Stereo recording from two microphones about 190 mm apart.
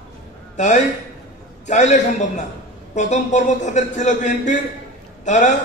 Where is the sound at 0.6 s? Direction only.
40° left (ahead or behind).